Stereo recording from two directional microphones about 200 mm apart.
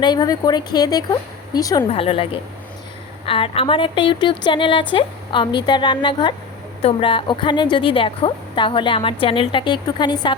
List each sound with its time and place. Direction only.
0.0 s a woman's voice: 20° left (ahead or behind)
3.2 s a woman's voice: 25° left (ahead or behind)